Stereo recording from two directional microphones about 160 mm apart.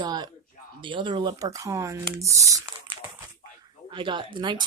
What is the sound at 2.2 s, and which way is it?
Crumpling, 20° right (ahead or behind).